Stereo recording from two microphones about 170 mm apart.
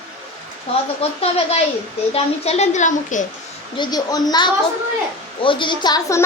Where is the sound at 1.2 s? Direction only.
35° left (ahead or behind).